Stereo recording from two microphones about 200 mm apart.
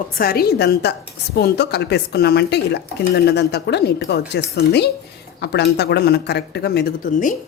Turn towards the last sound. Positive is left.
turn(degrees=40)  # may be behind; listen again after turning